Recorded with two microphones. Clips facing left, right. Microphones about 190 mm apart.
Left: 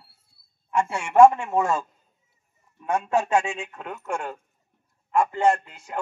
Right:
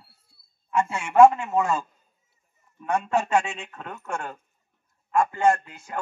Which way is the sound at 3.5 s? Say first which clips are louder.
Left 3 dB; 15° left (ahead or behind).